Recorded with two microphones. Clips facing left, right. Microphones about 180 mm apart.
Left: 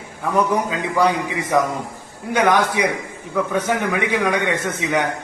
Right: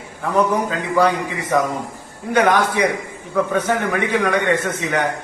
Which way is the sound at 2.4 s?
15° left (ahead or behind).